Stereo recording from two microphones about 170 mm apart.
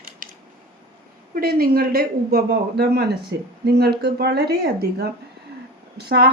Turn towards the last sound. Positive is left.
turn(degrees=-70)  # may be behind; listen again after turning